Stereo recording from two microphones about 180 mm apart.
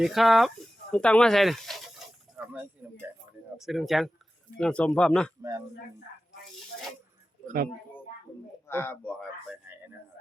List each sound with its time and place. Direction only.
0.0 s a sound: centre (ahead or behind)
3.6 s speech: centre (ahead or behind)
5.4 s a man's voice: 15° right (ahead or behind)
7.4 s speech: 55° right (ahead or behind)
8.6 s speech: 15° left (ahead or behind)